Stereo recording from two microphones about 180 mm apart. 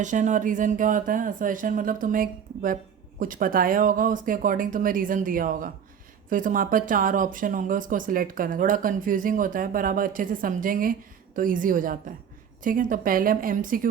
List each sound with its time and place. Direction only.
0.0 s speech: 45° right (ahead or behind)